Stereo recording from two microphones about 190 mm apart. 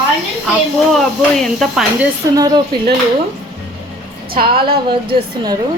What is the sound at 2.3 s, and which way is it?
Speech, 20° right (ahead or behind).